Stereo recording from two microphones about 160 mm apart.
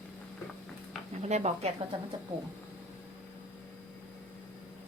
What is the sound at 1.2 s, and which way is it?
Speech, 45° right (ahead or behind).